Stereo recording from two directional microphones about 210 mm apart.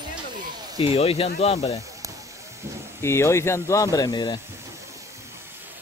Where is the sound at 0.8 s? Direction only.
25° left (ahead or behind).